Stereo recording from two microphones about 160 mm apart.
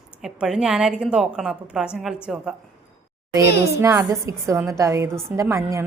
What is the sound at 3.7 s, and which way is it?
A woman's voice, 20° right (ahead or behind).